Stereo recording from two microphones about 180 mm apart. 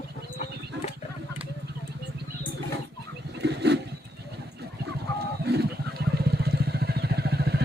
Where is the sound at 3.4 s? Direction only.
70° right (ahead or behind).